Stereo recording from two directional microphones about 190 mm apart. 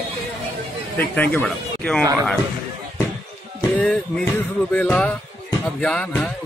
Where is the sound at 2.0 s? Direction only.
15° right (ahead or behind).